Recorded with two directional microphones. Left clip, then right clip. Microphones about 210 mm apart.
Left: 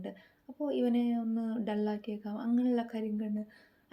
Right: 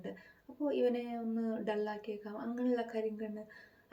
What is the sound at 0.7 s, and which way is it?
A woman's voice, 50° left (ahead or behind).